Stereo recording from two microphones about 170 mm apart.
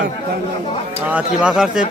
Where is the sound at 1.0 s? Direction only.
5° right (ahead or behind).